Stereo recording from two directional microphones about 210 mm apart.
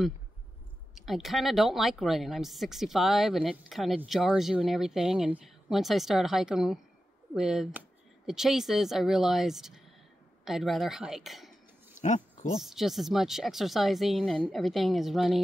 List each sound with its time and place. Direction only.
1.0 s speech: centre (ahead or behind)
12.0 s a sound: 35° left (ahead or behind)
12.5 s speech: centre (ahead or behind)